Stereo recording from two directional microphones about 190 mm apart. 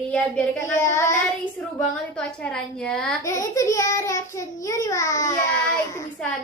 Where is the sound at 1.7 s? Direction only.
5° left (ahead or behind).